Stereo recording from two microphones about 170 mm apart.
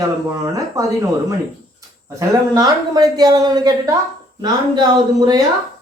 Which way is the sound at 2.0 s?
20° right (ahead or behind).